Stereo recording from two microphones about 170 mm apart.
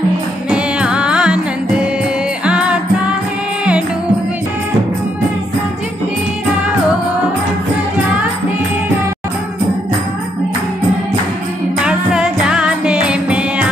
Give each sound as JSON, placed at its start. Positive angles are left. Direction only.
{"t": 0.5, "sound": "music", "side_deg": -5}
{"t": 11.8, "sound": "jingle bell", "side_deg": -5}